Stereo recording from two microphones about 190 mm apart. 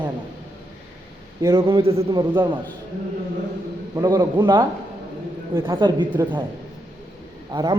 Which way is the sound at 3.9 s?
20° right (ahead or behind).